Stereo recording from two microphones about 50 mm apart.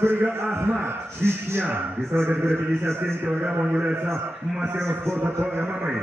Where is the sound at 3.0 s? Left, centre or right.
Right.